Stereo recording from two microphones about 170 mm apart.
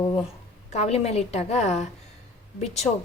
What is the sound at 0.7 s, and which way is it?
A woman's voice, 40° left (ahead or behind).